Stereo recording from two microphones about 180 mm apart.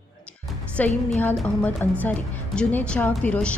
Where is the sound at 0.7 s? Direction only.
10° left (ahead or behind).